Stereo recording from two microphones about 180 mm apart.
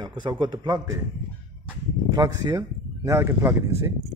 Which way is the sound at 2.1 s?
20° right (ahead or behind).